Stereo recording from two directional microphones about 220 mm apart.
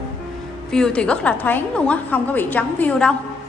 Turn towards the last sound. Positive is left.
turn(degrees=5)  # may be behind; listen again after turning